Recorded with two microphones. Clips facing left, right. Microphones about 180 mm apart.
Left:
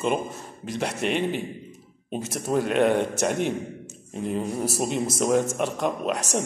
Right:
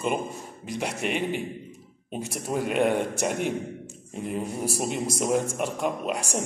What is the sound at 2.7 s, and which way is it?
A man's voice, 10° right (ahead or behind).